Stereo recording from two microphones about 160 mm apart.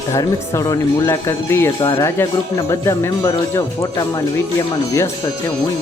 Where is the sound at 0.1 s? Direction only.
20° left (ahead or behind).